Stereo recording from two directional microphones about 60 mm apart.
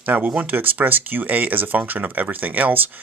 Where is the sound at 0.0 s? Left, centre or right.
Right.